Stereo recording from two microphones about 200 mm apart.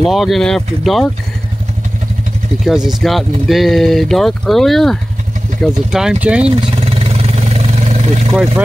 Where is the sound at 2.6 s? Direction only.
Centre (ahead or behind).